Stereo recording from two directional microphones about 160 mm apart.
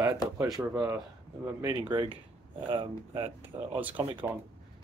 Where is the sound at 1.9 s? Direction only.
30° right (ahead or behind).